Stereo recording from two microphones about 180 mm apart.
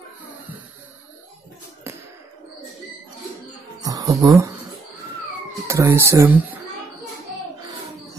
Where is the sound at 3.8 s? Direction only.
20° right (ahead or behind).